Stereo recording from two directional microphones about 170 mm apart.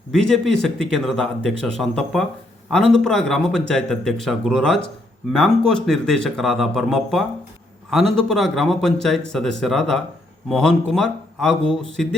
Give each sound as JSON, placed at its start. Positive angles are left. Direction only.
{"t": 0.1, "sound": "speech", "side_deg": 5}